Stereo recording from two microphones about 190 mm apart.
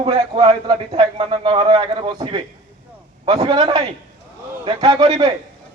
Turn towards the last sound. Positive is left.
turn(degrees=-25)  # may be behind; listen again after turning